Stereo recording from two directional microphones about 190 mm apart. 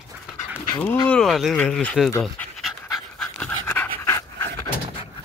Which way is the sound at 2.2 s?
5° left (ahead or behind).